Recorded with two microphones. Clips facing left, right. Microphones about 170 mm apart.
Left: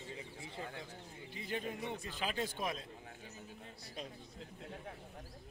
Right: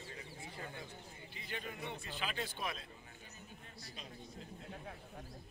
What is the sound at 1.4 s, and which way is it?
Speech, 35° left (ahead or behind).